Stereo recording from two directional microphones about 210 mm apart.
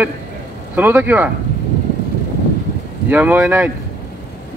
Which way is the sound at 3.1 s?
10° right (ahead or behind).